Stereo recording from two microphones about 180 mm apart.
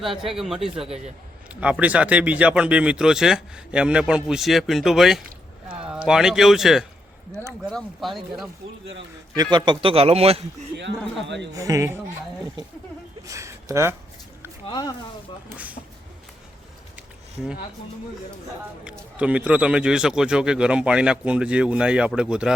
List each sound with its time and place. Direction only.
0.0 s a man's voice: centre (ahead or behind)
9.3 s speech: 25° right (ahead or behind)
11.3 s speech: 80° right
11.5 s speech: 20° right (ahead or behind)
13.2 s a sound: 15° right (ahead or behind)
14.7 s speech: 20° left (ahead or behind)
15.4 s speech: 10° right (ahead or behind)
18.9 s a man's voice: 5° right (ahead or behind)